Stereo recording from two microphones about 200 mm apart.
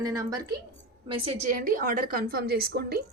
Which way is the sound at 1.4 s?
40° right (ahead or behind).